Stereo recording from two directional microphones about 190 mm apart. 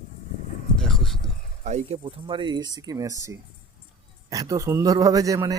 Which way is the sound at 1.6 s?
35° right (ahead or behind).